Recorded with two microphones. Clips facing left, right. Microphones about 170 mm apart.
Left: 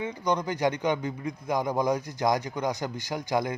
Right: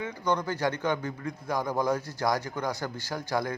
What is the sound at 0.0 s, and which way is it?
A man's voice, 20° left (ahead or behind).